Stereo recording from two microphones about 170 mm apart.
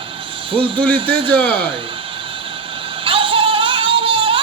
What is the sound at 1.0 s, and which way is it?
Speech, 30° right (ahead or behind).